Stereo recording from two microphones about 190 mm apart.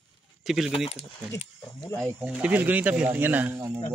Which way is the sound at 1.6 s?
10° left (ahead or behind).